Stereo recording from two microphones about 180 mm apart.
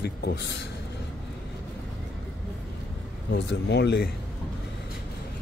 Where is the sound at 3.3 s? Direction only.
70° left (ahead or behind).